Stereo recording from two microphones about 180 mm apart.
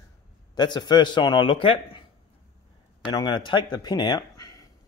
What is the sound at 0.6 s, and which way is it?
A man's voice, 25° left (ahead or behind).